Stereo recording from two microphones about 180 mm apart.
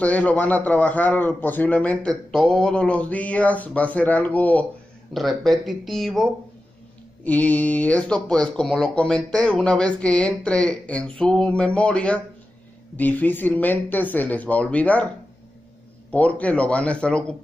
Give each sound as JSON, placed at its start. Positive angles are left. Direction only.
{"t": 0.0, "sound": "a man's voice", "side_deg": 10}
{"t": 7.2, "sound": "a man's voice", "side_deg": 10}
{"t": 16.1, "sound": "a man's voice", "side_deg": 10}